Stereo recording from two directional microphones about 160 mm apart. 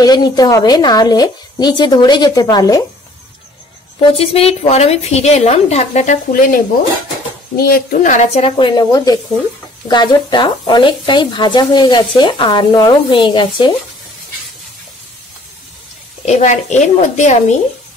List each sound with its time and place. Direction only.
0.0 s speech: 25° left (ahead or behind)
4.2 s a woman's voice: 40° left (ahead or behind)
6.3 s a woman's voice: 60° left (ahead or behind)
8.5 s speech: 30° left (ahead or behind)
16.3 s a woman's voice: 45° left (ahead or behind)